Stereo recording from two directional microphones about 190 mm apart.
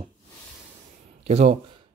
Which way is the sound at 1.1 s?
35° right (ahead or behind).